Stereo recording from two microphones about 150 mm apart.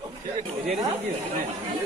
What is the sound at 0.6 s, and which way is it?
Speech, 50° right (ahead or behind).